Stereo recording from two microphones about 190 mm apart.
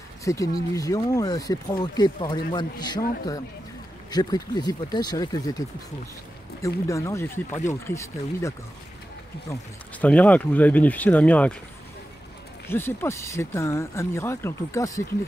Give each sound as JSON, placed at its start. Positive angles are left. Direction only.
{"t": 0.2, "sound": "speech", "side_deg": 15}
{"t": 6.9, "sound": "speech", "side_deg": 15}
{"t": 12.6, "sound": "speech", "side_deg": 10}